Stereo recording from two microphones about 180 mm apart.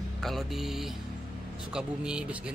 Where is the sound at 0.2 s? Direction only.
Centre (ahead or behind).